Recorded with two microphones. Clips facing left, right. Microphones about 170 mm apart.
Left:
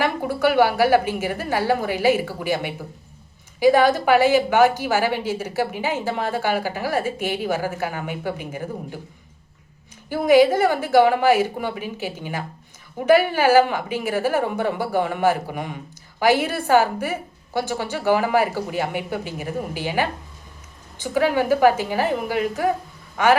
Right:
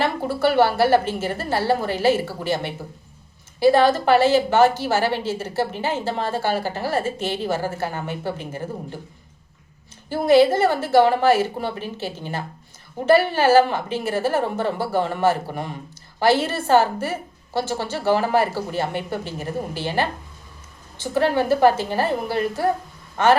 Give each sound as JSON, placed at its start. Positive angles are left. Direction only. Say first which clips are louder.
{"t": 0.0, "sound": "a sound", "louder": "even", "side_deg": 15}
{"t": 0.4, "sound": "a woman's voice", "louder": "even", "side_deg": 10}
{"t": 10.1, "sound": "a woman's voice", "louder": "even", "side_deg": 15}